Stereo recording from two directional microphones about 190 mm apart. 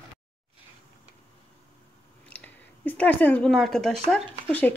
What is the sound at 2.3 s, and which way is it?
Chewing, 30° right (ahead or behind).